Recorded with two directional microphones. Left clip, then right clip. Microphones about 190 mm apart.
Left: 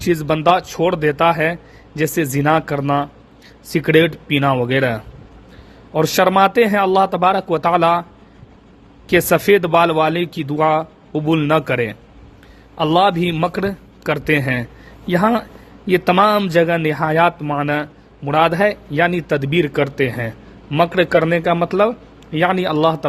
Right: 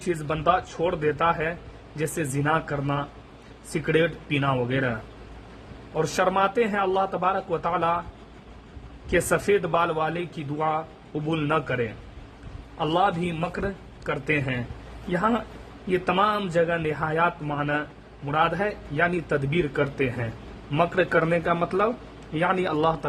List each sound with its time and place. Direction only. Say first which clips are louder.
0.1 s speech: left 9 dB; 40° left (ahead or behind)
9.0 s speech: left 9 dB; 45° left (ahead or behind)